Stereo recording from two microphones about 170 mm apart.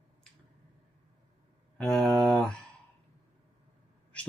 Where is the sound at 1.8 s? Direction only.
5° left (ahead or behind).